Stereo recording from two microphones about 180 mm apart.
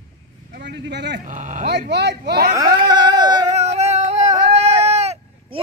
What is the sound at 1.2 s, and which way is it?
Speech, 45° right (ahead or behind).